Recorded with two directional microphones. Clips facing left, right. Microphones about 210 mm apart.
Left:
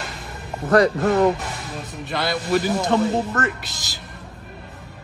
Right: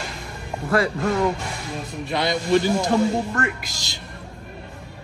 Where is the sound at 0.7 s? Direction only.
40° left (ahead or behind).